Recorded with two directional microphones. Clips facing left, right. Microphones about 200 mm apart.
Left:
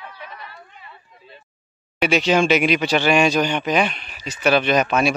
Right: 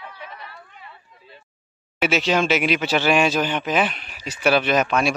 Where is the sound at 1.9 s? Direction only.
5° right (ahead or behind).